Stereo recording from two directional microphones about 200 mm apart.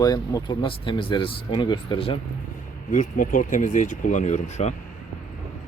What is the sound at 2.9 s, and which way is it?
Speech, 40° left (ahead or behind).